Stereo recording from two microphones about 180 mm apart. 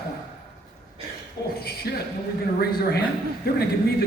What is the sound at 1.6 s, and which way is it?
Speech, 60° left (ahead or behind).